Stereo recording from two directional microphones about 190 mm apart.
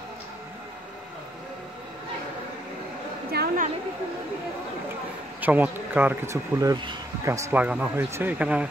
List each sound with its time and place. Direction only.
3.3 s a woman's voice: 55° right (ahead or behind)
5.4 s speech: 10° right (ahead or behind)